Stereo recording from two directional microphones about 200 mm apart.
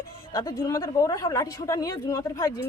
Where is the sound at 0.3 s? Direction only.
15° left (ahead or behind).